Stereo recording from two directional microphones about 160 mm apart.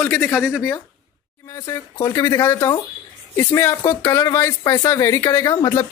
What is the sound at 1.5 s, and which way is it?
A man's voice, 20° left (ahead or behind).